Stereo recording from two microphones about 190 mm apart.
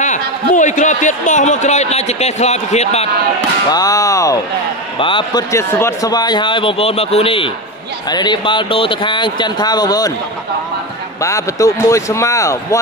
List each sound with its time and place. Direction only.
0.0 s a man's voice: 40° left (ahead or behind)
3.7 s a man's voice: 20° left (ahead or behind)
11.2 s speech: 15° left (ahead or behind)